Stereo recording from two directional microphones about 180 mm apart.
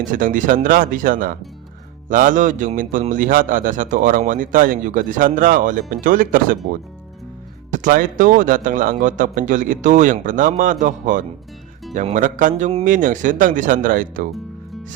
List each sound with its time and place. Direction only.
0.0 s a man's voice: 45° right (ahead or behind)
7.7 s a man's voice: 45° right (ahead or behind)